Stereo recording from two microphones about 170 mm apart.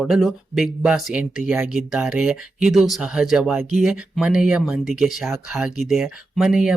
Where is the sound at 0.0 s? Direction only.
Centre (ahead or behind).